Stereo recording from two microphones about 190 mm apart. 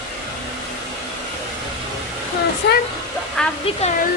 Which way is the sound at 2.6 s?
70° left (ahead or behind).